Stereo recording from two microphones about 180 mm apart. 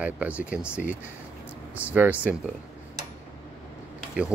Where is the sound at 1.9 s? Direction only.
10° right (ahead or behind).